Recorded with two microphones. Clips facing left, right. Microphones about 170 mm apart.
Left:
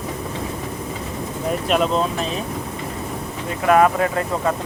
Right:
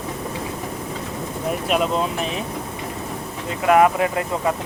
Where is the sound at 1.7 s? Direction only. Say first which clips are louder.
Left 2 dB; 5° right (ahead or behind).